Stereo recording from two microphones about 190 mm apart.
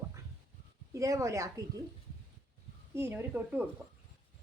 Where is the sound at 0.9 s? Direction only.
15° right (ahead or behind).